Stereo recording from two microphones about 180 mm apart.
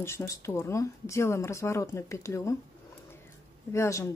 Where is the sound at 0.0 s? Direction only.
15° left (ahead or behind).